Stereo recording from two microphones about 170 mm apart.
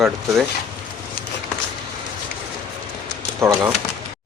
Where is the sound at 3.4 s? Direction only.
15° right (ahead or behind).